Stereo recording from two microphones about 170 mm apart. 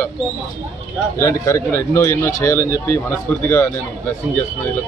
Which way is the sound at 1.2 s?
15° left (ahead or behind).